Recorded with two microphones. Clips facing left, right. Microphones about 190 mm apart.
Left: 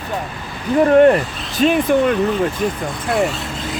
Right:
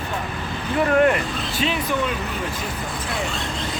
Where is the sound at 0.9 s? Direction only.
35° left (ahead or behind); by 2.2 s 50° left (ahead or behind).